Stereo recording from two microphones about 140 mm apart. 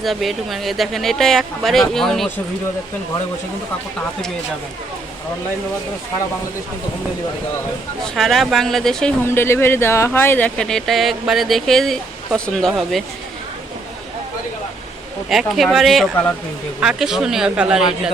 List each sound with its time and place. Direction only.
0.0 s speech: centre (ahead or behind)
8.0 s speech: centre (ahead or behind)
9.2 s speech: 15° left (ahead or behind); by 13.0 s centre (ahead or behind)
15.3 s speech: centre (ahead or behind)